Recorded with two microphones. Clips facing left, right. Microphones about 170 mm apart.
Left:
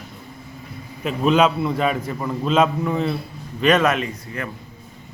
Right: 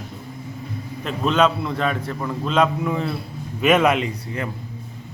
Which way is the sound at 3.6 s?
10° right (ahead or behind).